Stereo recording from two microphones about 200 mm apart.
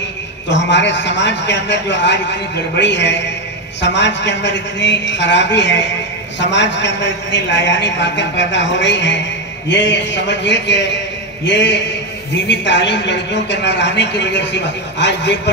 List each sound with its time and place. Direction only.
0.5 s a man's voice: 60° left (ahead or behind)